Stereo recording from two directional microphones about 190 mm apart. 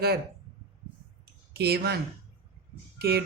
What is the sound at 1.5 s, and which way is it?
Speech, 55° right (ahead or behind).